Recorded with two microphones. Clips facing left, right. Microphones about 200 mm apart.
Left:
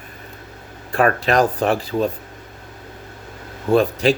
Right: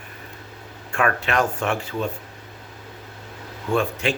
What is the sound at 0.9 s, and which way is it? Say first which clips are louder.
Speech: left 5 dB; 35° left (ahead or behind).